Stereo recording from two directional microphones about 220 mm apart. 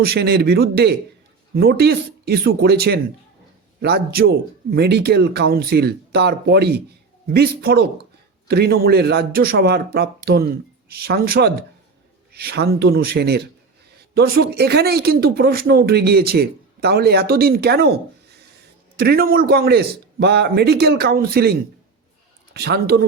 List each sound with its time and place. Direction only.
0.0 s speech: 45° right (ahead or behind)